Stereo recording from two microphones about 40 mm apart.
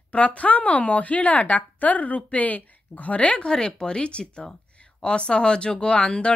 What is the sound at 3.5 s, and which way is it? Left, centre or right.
Speech, centre.